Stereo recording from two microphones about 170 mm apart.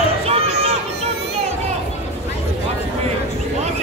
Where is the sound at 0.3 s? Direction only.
40° right (ahead or behind).